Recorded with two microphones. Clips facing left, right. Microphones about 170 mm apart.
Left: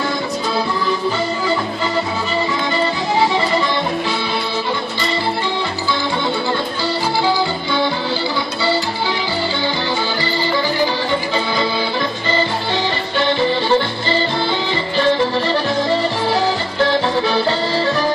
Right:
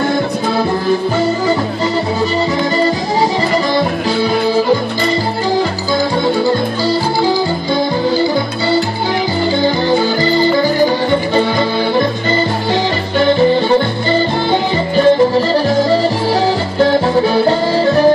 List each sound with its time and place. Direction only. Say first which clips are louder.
9.8 s music: right 8 dB; 50° right (ahead or behind)
13.3 s music: right 5 dB; 45° right (ahead or behind)
16.8 s music: right 5 dB; 45° right (ahead or behind)